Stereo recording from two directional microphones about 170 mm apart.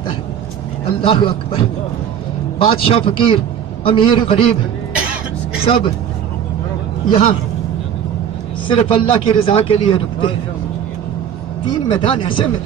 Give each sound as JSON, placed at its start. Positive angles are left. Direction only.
{"t": 1.0, "sound": "a man's voice", "side_deg": 30}
{"t": 2.6, "sound": "a man's voice", "side_deg": 30}
{"t": 7.1, "sound": "a man's voice", "side_deg": 35}
{"t": 8.6, "sound": "a man's voice", "side_deg": 30}
{"t": 11.9, "sound": "speech", "side_deg": 30}